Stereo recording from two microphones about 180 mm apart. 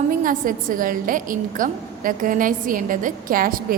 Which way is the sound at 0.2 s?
50° right (ahead or behind).